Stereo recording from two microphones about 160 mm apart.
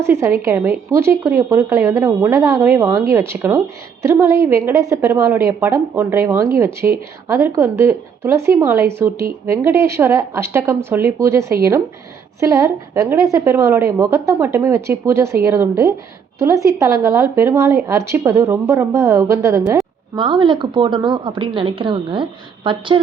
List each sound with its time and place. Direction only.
0.0 s a woman's voice: 15° right (ahead or behind); by 23.0 s 30° right (ahead or behind)